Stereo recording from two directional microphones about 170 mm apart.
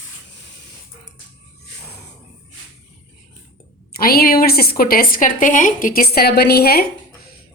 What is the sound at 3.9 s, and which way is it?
A woman's voice, 60° left (ahead or behind).